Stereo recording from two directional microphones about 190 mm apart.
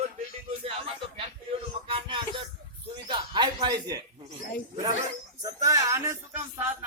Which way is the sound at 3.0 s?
25° right (ahead or behind).